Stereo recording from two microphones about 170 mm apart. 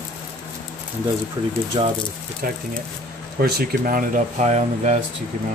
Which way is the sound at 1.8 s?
30° right (ahead or behind).